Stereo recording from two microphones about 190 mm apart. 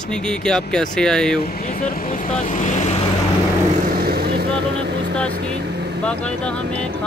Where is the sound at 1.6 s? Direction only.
45° left (ahead or behind).